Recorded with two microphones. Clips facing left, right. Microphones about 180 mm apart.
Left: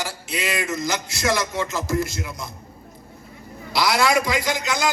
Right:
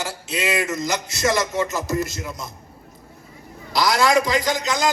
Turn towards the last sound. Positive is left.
turn(degrees=-40)  # may be behind; listen again after turning